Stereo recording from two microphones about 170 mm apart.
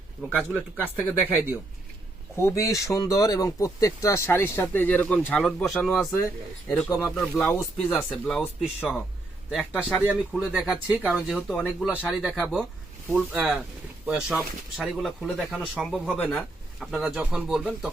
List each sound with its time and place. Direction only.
0.2 s speech: 5° left (ahead or behind)
2.4 s speech: 15° left (ahead or behind)
12.0 s speech: 5° right (ahead or behind)
16.9 s speech: 5° right (ahead or behind)